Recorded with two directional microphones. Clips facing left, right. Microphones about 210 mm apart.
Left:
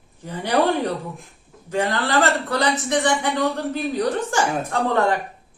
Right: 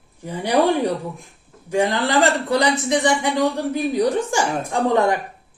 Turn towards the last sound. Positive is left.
turn(degrees=-15)  # may be behind; listen again after turning